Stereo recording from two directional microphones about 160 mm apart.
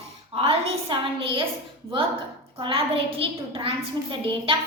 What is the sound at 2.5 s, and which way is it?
A woman's voice, 35° right (ahead or behind).